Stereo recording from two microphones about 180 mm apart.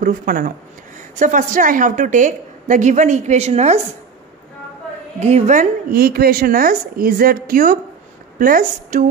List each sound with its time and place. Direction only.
0.0 s a woman's voice: 50° right (ahead or behind)
5.2 s a woman's voice: 40° right (ahead or behind)